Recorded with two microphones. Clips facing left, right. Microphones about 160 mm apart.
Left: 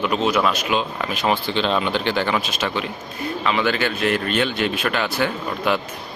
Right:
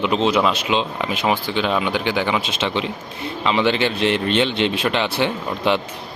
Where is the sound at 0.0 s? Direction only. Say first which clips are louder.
Right 2 dB; 25° right (ahead or behind).